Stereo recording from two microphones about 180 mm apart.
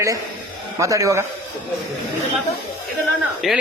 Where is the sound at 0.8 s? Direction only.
15° right (ahead or behind).